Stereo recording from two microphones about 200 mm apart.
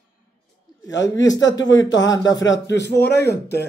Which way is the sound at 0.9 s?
65° left (ahead or behind).